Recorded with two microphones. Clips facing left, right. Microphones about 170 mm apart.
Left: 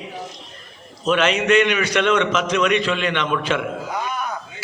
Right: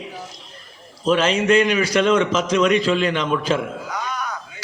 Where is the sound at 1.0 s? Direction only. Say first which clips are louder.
Right 1 dB; 30° right (ahead or behind).